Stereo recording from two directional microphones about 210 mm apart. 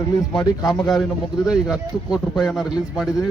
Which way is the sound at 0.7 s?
Centre (ahead or behind).